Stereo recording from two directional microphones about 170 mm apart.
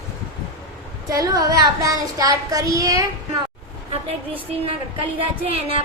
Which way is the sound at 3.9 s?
35° right (ahead or behind).